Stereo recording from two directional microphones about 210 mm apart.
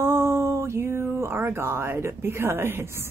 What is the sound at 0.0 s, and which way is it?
Speech, 10° right (ahead or behind).